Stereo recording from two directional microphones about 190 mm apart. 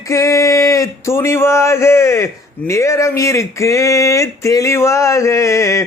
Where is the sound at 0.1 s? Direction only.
15° left (ahead or behind).